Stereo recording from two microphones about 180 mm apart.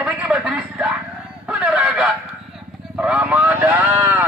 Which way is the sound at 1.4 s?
5° right (ahead or behind).